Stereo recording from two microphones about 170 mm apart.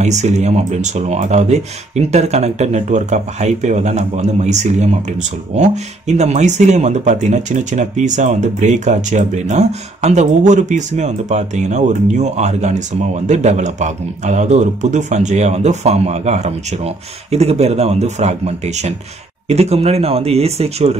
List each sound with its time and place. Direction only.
0.0 s speech: 40° right (ahead or behind)